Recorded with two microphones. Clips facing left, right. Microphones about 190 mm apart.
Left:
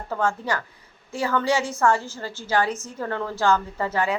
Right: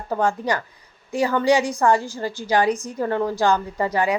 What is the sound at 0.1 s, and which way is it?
A woman's voice, 15° right (ahead or behind).